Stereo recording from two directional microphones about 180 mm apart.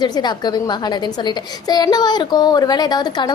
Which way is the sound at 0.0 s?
25° left (ahead or behind).